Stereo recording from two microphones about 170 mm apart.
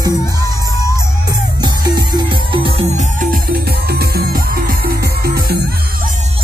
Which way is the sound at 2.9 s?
45° right (ahead or behind).